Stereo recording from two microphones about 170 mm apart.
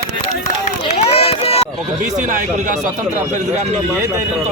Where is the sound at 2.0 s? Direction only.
45° right (ahead or behind).